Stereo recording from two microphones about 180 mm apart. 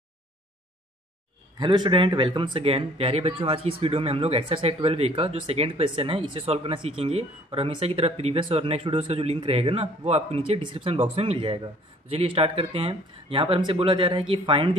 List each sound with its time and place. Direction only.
1.6 s speech: 25° right (ahead or behind)